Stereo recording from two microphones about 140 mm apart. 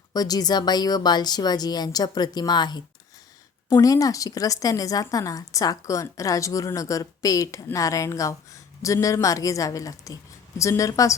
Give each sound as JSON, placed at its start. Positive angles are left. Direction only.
{"t": 0.1, "sound": "a woman's voice", "side_deg": 25}